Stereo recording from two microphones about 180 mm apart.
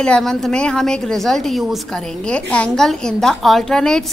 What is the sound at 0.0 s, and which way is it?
A woman's voice, 5° left (ahead or behind).